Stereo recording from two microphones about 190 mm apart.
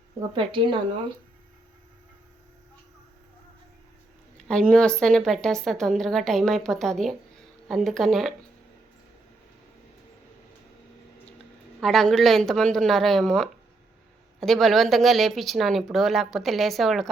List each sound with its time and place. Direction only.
0.3 s speech: 25° right (ahead or behind)
4.4 s a woman's voice: 5° left (ahead or behind)
11.8 s a woman's voice: centre (ahead or behind)